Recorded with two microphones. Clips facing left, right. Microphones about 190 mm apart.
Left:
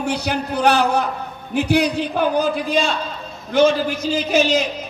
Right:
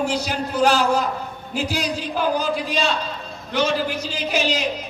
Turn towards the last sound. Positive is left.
turn(degrees=45)  # may be behind; listen again after turning